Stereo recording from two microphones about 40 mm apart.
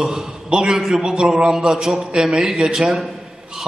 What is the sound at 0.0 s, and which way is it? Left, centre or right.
A man's voice, centre.